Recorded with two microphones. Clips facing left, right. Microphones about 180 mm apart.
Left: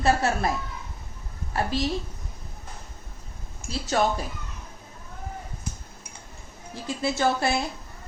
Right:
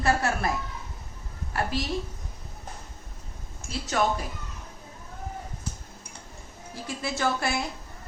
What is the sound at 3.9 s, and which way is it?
Speech, 35° left (ahead or behind).